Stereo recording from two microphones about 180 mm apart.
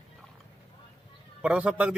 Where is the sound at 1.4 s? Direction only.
5° right (ahead or behind).